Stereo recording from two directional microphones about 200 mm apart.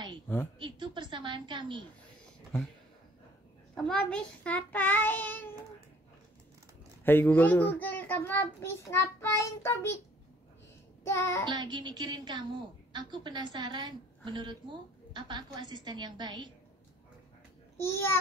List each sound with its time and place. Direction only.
0.6 s a sound: 25° right (ahead or behind)
3.7 s child singing: 5° left (ahead or behind)
7.1 s child singing: 10° left (ahead or behind)
11.1 s child singing: 15° left (ahead or behind)
11.4 s a woman's voice: 20° right (ahead or behind)
17.7 s child singing: 10° left (ahead or behind)